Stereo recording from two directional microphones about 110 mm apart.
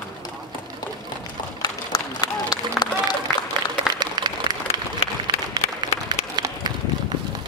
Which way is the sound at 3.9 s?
40° right (ahead or behind).